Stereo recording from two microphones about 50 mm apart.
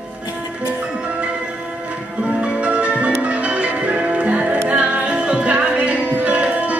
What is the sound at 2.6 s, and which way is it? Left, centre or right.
Music, right.